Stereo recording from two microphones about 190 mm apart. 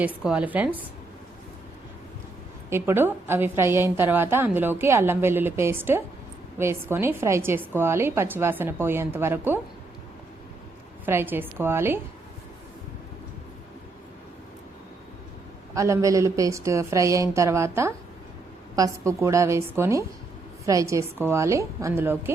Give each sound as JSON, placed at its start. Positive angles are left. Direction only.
{"t": 0.0, "sound": "a woman's voice", "side_deg": -5}
{"t": 2.6, "sound": "a woman's voice", "side_deg": -10}
{"t": 11.0, "sound": "a woman's voice", "side_deg": -10}
{"t": 15.7, "sound": "a woman's voice", "side_deg": -15}